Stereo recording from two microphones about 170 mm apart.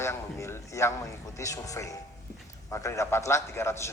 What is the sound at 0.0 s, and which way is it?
A man's voice, 15° left (ahead or behind).